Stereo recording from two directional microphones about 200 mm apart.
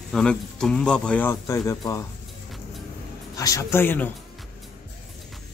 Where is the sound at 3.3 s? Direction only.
15° left (ahead or behind).